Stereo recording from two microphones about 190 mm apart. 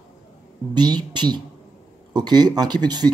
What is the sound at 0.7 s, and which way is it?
Speech, 20° right (ahead or behind).